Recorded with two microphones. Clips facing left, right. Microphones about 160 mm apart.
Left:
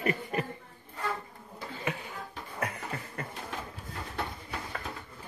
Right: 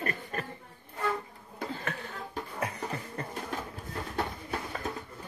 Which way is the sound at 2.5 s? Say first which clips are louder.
Even; 30° right (ahead or behind).